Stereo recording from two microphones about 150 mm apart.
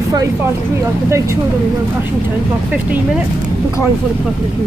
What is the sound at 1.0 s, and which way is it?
Speech, 20° right (ahead or behind).